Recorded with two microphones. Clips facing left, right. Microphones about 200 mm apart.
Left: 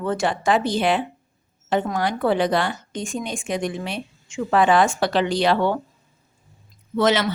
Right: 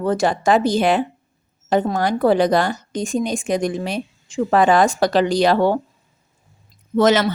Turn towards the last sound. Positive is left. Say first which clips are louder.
# right 4 dB
turn(degrees=-45)  # may be behind; listen again after turning